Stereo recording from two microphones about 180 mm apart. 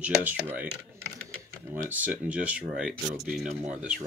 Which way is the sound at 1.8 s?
10° right (ahead or behind).